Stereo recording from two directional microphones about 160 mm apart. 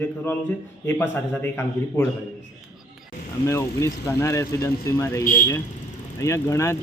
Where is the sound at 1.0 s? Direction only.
15° left (ahead or behind).